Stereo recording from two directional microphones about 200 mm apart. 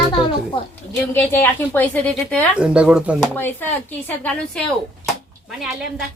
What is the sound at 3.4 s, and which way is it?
A woman's voice, 10° left (ahead or behind).